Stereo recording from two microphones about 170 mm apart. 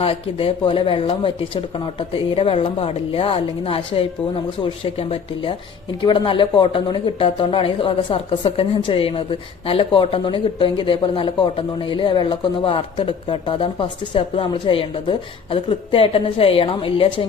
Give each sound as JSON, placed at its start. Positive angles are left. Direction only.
{"t": 0.0, "sound": "speech", "side_deg": 35}